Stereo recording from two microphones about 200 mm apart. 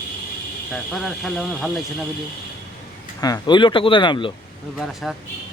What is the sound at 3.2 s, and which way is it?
Speech, 20° left (ahead or behind).